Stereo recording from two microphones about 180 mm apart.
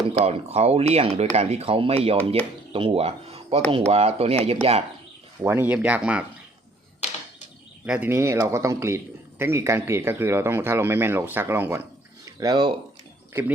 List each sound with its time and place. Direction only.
0.1 s speech: 35° right (ahead or behind)
5.4 s speech: 15° right (ahead or behind)
7.0 s typewriter: 40° left (ahead or behind)
7.9 s speech: 10° right (ahead or behind); by 12.7 s 25° right (ahead or behind)